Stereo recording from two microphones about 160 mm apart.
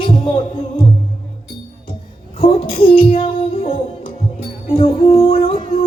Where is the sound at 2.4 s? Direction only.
35° left (ahead or behind).